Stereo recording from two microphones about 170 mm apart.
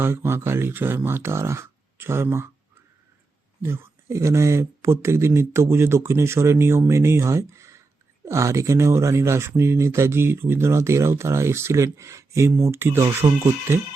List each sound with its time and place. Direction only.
0.0 s speech: 15° right (ahead or behind)
3.6 s speech: 15° right (ahead or behind)